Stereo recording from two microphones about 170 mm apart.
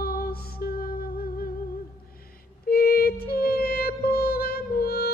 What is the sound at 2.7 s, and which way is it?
Music, 65° left (ahead or behind).